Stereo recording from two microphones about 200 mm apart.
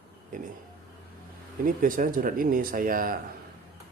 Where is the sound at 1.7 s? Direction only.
45° right (ahead or behind).